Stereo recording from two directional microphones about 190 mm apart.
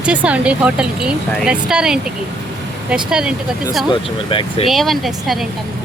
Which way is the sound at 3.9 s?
25° left (ahead or behind).